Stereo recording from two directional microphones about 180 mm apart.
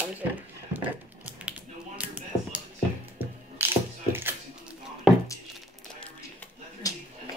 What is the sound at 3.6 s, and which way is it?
Mechanisms, 10° right (ahead or behind).